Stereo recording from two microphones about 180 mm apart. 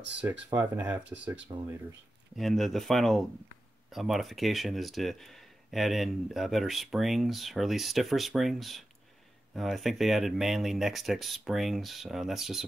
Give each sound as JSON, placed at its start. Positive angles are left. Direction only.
{"t": 0.2, "sound": "speech", "side_deg": -15}
{"t": 1.5, "sound": "speech", "side_deg": -25}
{"t": 2.3, "sound": "speech", "side_deg": 0}